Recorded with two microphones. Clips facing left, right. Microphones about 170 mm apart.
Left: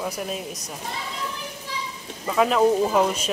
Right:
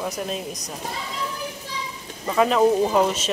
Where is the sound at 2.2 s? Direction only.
Centre (ahead or behind).